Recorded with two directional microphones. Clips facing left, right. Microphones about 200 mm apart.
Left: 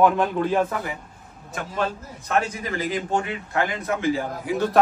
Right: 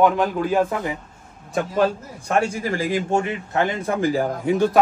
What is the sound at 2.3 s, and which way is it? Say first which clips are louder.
A man's voice: right 3 dB; 30° right (ahead or behind).